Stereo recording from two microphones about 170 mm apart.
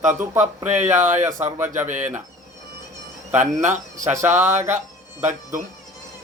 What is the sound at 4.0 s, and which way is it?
Speech, 15° right (ahead or behind).